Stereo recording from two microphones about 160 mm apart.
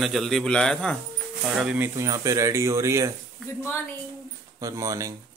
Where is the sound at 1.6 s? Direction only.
10° right (ahead or behind).